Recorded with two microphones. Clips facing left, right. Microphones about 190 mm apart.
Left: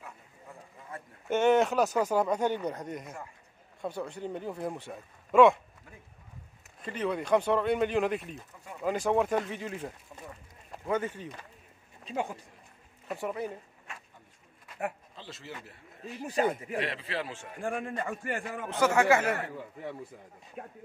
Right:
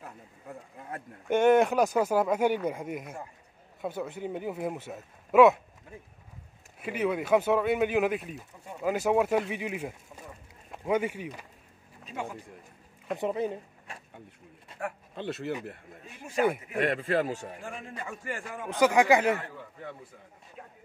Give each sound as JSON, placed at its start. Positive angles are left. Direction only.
{"t": 0.0, "sound": "a sound", "side_deg": -60}
{"t": 1.3, "sound": "speech", "side_deg": -10}
{"t": 6.8, "sound": "speech", "side_deg": -10}
{"t": 13.2, "sound": "speech", "side_deg": -20}
{"t": 15.1, "sound": "a man's voice", "side_deg": -60}
{"t": 17.6, "sound": "a man's voice", "side_deg": 55}
{"t": 18.7, "sound": "speech", "side_deg": -15}